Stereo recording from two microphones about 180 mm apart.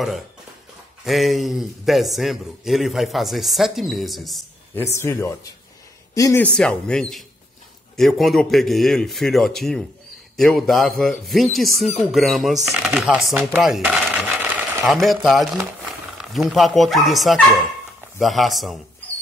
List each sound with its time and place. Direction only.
1.0 s a man's voice: centre (ahead or behind)
4.7 s speech: 15° left (ahead or behind)
6.4 s a man's voice: 5° left (ahead or behind)